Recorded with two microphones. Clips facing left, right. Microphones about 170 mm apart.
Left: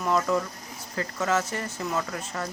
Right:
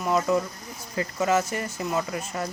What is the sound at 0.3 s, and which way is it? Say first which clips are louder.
Speech: right 2 dB; 10° right (ahead or behind).